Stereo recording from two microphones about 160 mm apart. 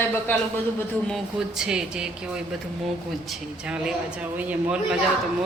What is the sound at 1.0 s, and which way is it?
A man's voice, centre (ahead or behind).